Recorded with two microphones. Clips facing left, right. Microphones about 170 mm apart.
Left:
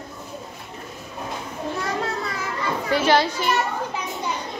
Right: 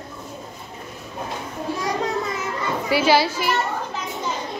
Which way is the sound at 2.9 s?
10° right (ahead or behind).